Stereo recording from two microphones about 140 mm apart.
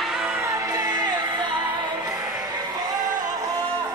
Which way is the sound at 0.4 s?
25° right (ahead or behind).